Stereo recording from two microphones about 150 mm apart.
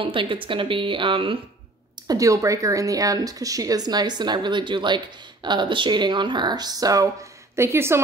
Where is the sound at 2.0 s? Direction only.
20° right (ahead or behind).